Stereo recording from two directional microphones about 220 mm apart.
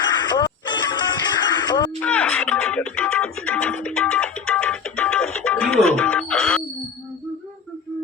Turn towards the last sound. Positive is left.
turn(degrees=5)  # may be behind; listen again after turning